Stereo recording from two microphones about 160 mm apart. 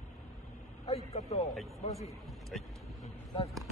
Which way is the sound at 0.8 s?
40° left (ahead or behind).